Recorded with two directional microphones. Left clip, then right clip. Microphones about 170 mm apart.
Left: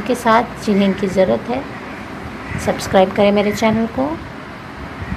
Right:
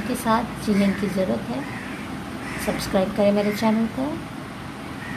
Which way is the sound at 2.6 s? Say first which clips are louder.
Left 10 dB; 15° left (ahead or behind).